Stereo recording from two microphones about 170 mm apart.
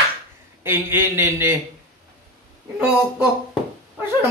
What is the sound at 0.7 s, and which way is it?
Speech, 10° right (ahead or behind).